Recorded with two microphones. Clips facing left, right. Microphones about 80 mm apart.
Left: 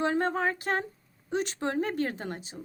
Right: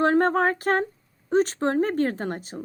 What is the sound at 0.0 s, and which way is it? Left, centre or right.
A woman's voice, right.